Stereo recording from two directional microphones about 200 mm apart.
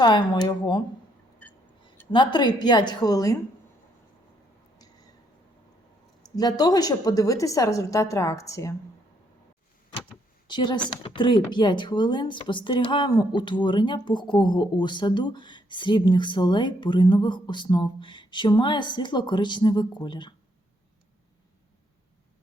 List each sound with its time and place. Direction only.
0.0 s speech: 20° left (ahead or behind)
1.4 s a sound: 10° left (ahead or behind)
2.1 s speech: 20° left (ahead or behind)
6.2 s a woman's voice: 20° left (ahead or behind)
10.5 s speech: 20° left (ahead or behind)